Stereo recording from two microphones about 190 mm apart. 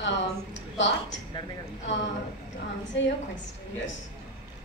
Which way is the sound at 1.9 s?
75° left (ahead or behind).